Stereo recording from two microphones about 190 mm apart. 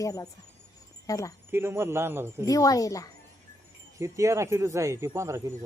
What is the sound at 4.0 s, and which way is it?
Speech, 15° right (ahead or behind).